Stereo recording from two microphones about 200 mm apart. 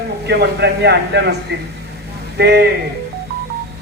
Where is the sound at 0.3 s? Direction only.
55° right (ahead or behind).